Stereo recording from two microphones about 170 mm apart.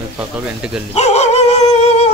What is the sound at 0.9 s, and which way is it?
Dog, 40° left (ahead or behind).